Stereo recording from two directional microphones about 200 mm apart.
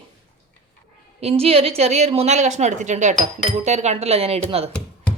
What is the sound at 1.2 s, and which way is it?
A woman's voice, 30° right (ahead or behind).